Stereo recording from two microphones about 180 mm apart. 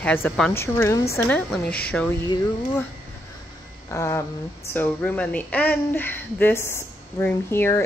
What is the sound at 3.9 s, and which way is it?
Speech, 15° left (ahead or behind).